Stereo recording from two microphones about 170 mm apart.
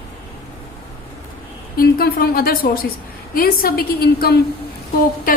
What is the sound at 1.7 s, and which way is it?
A woman's voice, 60° left (ahead or behind).